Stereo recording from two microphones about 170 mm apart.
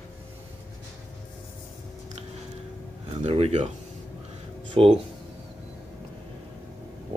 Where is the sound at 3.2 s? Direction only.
40° right (ahead or behind).